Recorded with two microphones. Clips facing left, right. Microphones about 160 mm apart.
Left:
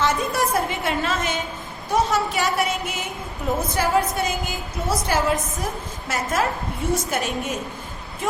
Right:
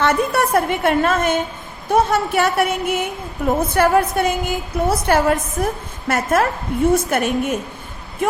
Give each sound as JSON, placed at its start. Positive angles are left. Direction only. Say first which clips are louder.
{"t": 0.0, "sound": "a woman's voice", "louder": "right 4 dB", "side_deg": -60}